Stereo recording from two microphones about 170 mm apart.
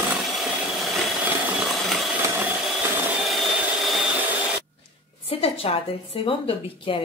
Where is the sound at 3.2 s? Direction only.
Centre (ahead or behind).